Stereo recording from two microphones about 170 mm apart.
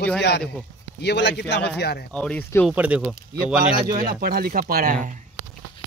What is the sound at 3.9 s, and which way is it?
Speech, 60° right (ahead or behind).